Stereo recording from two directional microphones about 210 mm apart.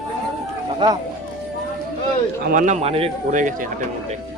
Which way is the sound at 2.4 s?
40° right (ahead or behind).